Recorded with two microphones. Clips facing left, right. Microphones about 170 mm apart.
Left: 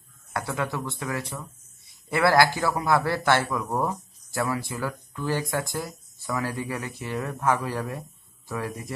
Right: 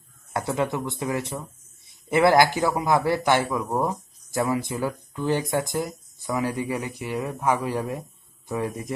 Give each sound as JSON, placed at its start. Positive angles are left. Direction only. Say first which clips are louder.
{"t": 0.3, "sound": "a man's voice", "louder": "right 4 dB", "side_deg": -20}